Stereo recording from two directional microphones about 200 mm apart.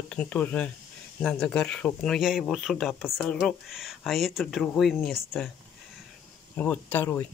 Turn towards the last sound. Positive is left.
turn(degrees=10)  # may be behind; listen again after turning